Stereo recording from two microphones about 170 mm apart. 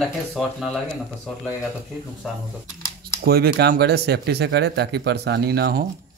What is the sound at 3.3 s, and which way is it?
Speech, 65° right (ahead or behind).